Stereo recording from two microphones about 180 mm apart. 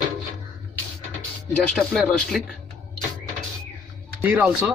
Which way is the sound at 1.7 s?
Centre (ahead or behind).